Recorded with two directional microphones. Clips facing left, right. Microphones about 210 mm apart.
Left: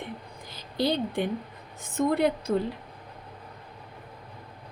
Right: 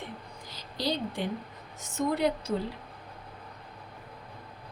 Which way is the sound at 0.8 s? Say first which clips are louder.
Left 5 dB; 55° left (ahead or behind).